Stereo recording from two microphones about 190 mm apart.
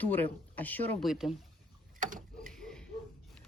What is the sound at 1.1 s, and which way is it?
Speech, centre (ahead or behind).